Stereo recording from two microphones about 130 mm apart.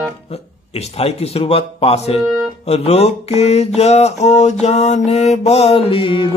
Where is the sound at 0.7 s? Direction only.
50° left (ahead or behind).